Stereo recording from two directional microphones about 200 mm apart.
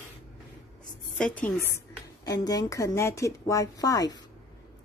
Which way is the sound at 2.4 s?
20° left (ahead or behind).